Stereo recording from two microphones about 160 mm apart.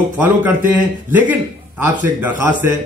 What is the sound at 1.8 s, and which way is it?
Speech, 15° right (ahead or behind).